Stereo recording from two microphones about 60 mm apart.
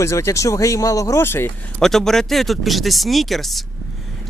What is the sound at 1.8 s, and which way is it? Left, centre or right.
Speech, centre.